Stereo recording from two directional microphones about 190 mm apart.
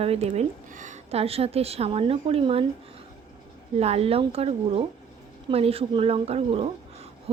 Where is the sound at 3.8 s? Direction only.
35° right (ahead or behind).